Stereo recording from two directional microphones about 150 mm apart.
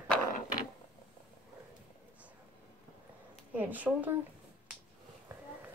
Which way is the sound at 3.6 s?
10° right (ahead or behind).